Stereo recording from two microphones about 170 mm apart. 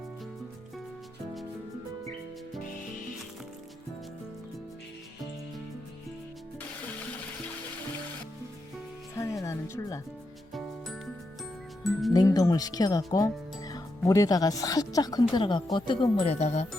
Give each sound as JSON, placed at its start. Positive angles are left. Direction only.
{"t": 9.4, "sound": "speech", "side_deg": 15}
{"t": 10.5, "sound": "music", "side_deg": 0}
{"t": 12.1, "sound": "chime", "side_deg": 20}
{"t": 13.1, "sound": "speech", "side_deg": 20}
{"t": 16.2, "sound": "speech", "side_deg": 40}